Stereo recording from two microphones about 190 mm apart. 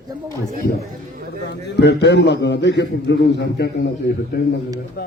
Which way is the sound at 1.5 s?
60° left (ahead or behind).